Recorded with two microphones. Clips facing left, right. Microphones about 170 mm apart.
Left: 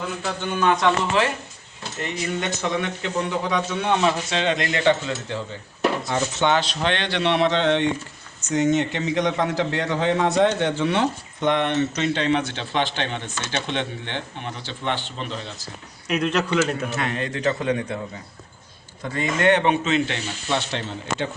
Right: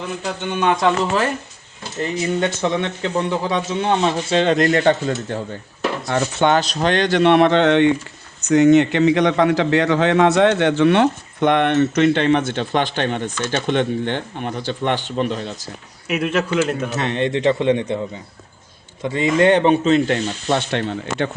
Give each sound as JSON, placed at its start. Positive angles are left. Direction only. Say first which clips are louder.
{"t": 0.2, "sound": "a man's voice", "louder": "right 2 dB", "side_deg": -20}
{"t": 2.0, "sound": "a man's voice", "louder": "right 7 dB", "side_deg": -30}
{"t": 16.0, "sound": "speech", "louder": "right 2 dB", "side_deg": -5}
{"t": 17.0, "sound": "a man's voice", "louder": "right 6 dB", "side_deg": -25}
{"t": 19.1, "sound": "speech", "louder": "right 5 dB", "side_deg": -30}